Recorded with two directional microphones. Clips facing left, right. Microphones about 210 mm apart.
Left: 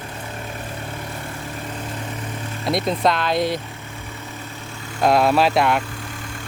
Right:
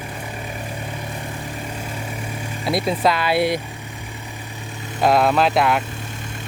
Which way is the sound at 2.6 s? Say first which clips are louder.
Even; 5° right (ahead or behind).